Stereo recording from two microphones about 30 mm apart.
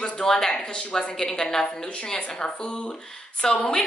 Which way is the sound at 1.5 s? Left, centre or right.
Left.